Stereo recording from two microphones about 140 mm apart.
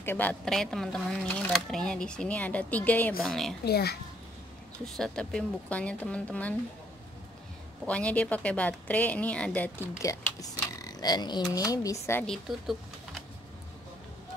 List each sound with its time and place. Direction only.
0.0 s speech: 15° left (ahead or behind)
3.2 s speech: centre (ahead or behind)
4.8 s speech: 5° left (ahead or behind)
7.8 s speech: 10° left (ahead or behind)
9.9 s speech: 25° left (ahead or behind)